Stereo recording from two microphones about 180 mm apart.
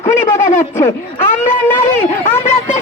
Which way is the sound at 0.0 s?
15° left (ahead or behind).